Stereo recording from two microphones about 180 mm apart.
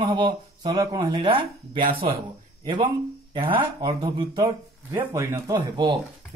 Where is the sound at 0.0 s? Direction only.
25° right (ahead or behind).